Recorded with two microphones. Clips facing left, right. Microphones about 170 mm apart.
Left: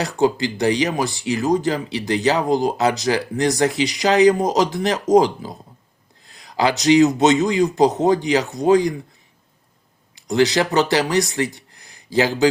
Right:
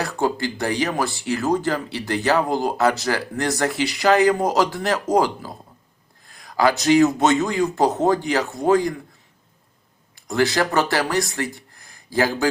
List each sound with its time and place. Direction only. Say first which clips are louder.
0.0 s speech: left 4 dB; 20° left (ahead or behind)
6.4 s a sound: right 1 dB; 45° right (ahead or behind)
7.0 s speech: left 2 dB; 20° left (ahead or behind)
10.4 s speech: left 2 dB; 20° left (ahead or behind)